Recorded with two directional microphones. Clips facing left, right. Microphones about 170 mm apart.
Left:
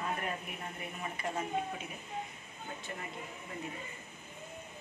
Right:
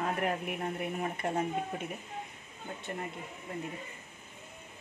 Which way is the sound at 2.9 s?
50° right (ahead or behind).